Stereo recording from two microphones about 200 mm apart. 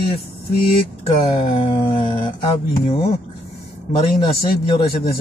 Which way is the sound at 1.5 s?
25° left (ahead or behind).